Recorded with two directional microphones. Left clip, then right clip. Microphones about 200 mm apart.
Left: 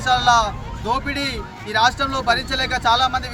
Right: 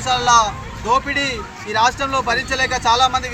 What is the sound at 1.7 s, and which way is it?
Speech, 20° left (ahead or behind).